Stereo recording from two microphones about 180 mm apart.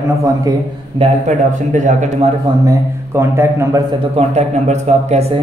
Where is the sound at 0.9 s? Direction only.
40° right (ahead or behind).